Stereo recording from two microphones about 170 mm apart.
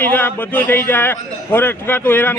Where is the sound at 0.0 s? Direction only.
10° left (ahead or behind).